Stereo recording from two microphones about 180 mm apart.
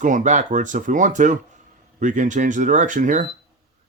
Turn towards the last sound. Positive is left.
turn(degrees=-45)  # may be behind; listen again after turning